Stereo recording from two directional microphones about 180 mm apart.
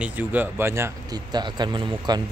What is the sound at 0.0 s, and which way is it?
Speech, 10° right (ahead or behind).